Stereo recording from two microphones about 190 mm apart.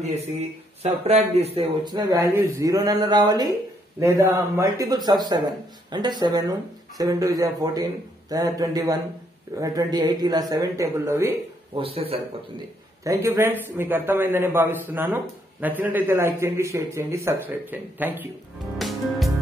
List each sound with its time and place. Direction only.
0.8 s speech: 35° right (ahead or behind); by 11.3 s 15° right (ahead or behind)
11.7 s speech: 30° right (ahead or behind)
13.0 s a man's voice: 15° right (ahead or behind)
18.8 s music: centre (ahead or behind)